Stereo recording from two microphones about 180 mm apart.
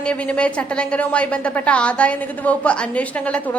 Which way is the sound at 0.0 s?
5° left (ahead or behind).